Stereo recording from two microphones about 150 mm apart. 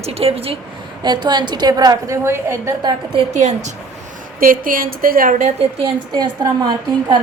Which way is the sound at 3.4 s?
50° right (ahead or behind).